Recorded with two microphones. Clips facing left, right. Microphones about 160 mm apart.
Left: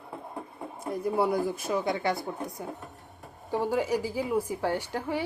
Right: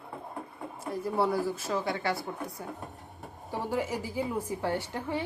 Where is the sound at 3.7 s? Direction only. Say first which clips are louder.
Left 1 dB; 15° left (ahead or behind).